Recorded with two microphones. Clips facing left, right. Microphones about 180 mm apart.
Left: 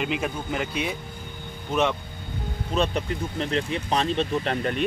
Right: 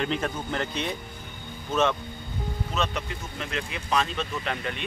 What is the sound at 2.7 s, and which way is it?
Speech, 35° left (ahead or behind).